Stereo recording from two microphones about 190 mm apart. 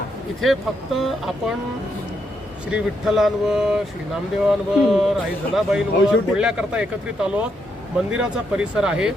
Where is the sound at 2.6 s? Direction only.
5° right (ahead or behind).